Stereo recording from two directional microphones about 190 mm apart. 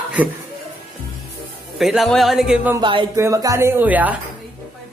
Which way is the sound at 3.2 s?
15° right (ahead or behind).